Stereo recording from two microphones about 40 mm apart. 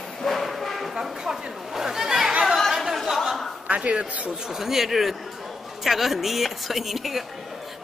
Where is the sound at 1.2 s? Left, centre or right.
Centre.